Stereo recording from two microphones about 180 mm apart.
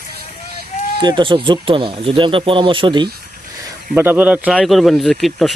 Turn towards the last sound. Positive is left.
turn(degrees=0)  # may be behind; listen again after turning